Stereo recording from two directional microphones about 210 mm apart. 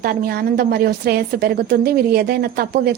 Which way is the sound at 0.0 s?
45° right (ahead or behind).